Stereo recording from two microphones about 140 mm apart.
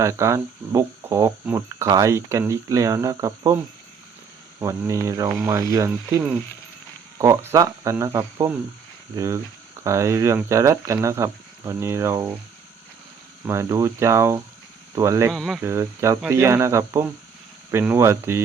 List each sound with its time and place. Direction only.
0.0 s speech: 20° right (ahead or behind)
4.6 s speech: 20° right (ahead or behind)
13.4 s speech: 20° right (ahead or behind)
15.3 s speech: centre (ahead or behind)
15.6 s speech: 20° right (ahead or behind)